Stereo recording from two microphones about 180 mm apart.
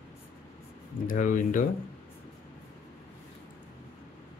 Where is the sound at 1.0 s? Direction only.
45° left (ahead or behind).